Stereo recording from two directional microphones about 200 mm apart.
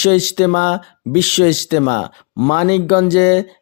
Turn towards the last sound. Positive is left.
turn(degrees=35)  # may be behind; listen again after turning